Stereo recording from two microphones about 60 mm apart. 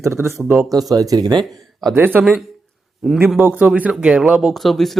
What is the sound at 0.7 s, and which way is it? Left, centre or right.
Speech, right.